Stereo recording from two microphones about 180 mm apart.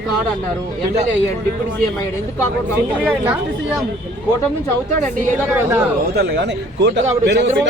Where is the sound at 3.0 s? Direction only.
10° right (ahead or behind).